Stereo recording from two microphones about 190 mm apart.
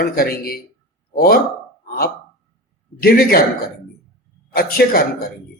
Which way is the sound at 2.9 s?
50° left (ahead or behind).